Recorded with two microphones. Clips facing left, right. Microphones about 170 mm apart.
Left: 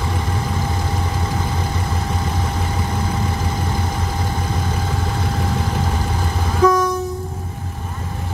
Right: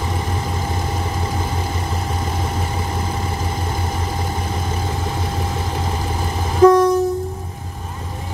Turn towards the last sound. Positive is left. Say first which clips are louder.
# right 5 dB
turn(degrees=-30)  # may be behind; listen again after turning